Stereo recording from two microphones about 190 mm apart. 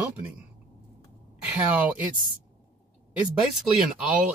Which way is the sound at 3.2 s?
5° right (ahead or behind).